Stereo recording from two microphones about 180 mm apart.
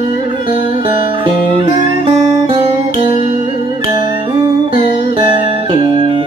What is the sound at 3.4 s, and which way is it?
Music, 25° right (ahead or behind).